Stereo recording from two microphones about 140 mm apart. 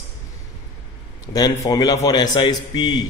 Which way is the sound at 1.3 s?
25° left (ahead or behind).